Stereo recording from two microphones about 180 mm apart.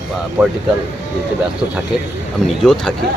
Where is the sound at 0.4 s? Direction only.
5° right (ahead or behind).